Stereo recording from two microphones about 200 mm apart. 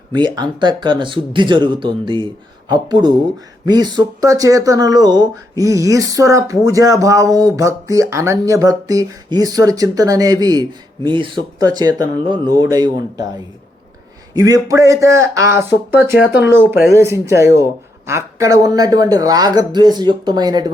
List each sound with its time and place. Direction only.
0.3 s speech: 20° right (ahead or behind)
14.3 s speech: 15° right (ahead or behind)